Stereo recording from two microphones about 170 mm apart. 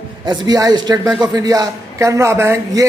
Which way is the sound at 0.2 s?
25° right (ahead or behind).